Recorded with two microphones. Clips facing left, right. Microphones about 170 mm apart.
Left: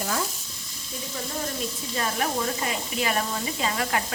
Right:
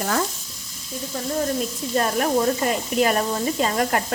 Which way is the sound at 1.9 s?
45° right (ahead or behind).